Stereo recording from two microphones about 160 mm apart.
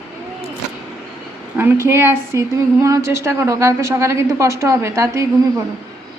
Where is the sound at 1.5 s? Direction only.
15° right (ahead or behind).